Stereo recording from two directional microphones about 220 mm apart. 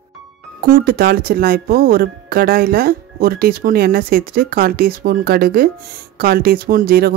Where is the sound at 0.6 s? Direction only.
40° right (ahead or behind).